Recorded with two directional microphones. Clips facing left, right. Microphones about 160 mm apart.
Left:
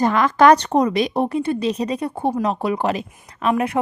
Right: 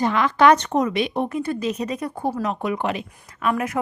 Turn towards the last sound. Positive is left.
turn(degrees=30)  # may be behind; listen again after turning